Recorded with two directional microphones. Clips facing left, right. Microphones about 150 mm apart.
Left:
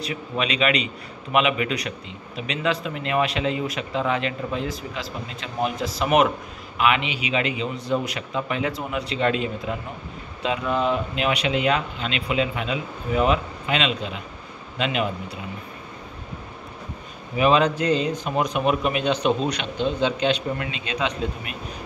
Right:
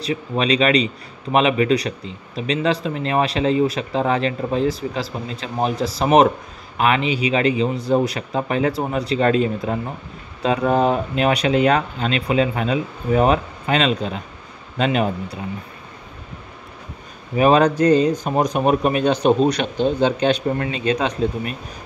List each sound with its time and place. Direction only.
0.0 s a man's voice: 35° right (ahead or behind)
17.4 s a man's voice: 40° right (ahead or behind)